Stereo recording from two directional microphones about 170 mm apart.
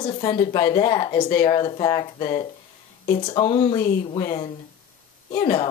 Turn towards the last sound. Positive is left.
turn(degrees=30)  # may be behind; listen again after turning